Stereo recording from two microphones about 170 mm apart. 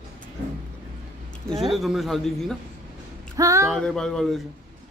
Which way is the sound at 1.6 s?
Centre (ahead or behind).